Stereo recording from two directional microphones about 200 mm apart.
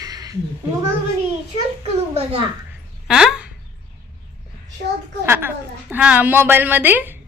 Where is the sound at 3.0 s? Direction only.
Centre (ahead or behind).